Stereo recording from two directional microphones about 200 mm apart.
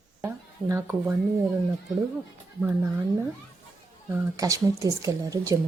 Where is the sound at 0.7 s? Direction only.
10° right (ahead or behind).